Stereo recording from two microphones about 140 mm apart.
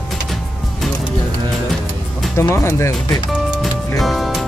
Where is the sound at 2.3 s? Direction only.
20° left (ahead or behind).